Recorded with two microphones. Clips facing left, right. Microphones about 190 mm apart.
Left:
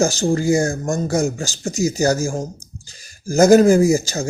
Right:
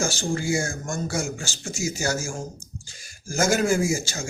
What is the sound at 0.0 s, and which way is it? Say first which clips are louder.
Speech: left 9 dB; 40° left (ahead or behind).